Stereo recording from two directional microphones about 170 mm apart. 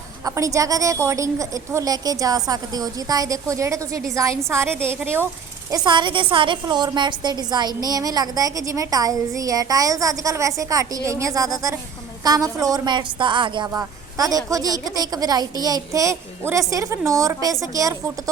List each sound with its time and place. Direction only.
0.3 s a woman's voice: 20° right (ahead or behind)
5.7 s a woman's voice: 25° right (ahead or behind)